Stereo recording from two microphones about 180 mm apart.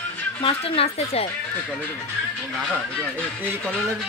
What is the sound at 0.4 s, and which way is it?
Speech, 30° left (ahead or behind).